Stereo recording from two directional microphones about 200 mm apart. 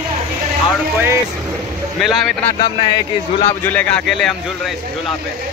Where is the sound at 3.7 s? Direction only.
5° left (ahead or behind).